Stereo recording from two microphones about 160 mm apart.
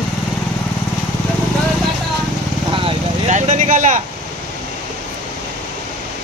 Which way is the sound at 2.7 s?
35° right (ahead or behind).